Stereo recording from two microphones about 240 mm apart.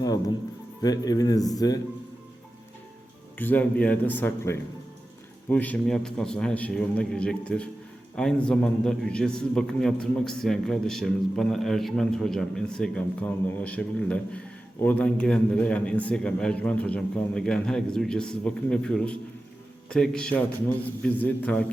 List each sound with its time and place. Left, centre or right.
0.8 s a man's voice: centre
3.3 s a man's voice: centre